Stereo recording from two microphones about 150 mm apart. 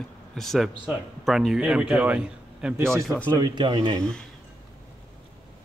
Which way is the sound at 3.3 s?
30° right (ahead or behind).